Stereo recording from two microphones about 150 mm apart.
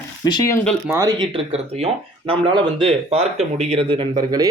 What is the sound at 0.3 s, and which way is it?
Speech, 25° left (ahead or behind).